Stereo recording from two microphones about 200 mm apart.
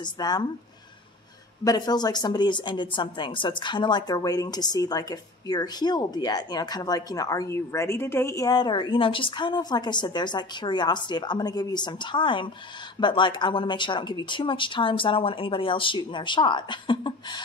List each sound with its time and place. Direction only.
0.0 s speech: 20° left (ahead or behind)
1.6 s speech: 20° left (ahead or behind)